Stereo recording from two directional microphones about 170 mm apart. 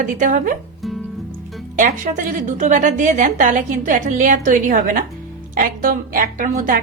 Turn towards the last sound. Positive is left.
turn(degrees=-50)  # may be behind; listen again after turning